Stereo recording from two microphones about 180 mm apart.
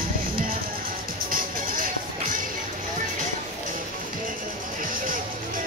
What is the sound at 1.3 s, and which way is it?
Music, 50° right (ahead or behind).